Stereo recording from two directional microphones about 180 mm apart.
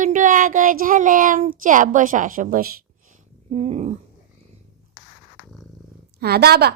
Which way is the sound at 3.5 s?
40° right (ahead or behind).